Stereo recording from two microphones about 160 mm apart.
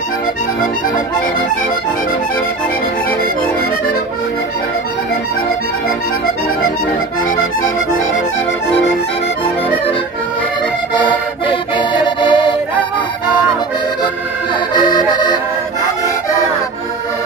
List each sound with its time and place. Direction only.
11.4 s music: 30° left (ahead or behind)
14.7 s accordion: 25° left (ahead or behind)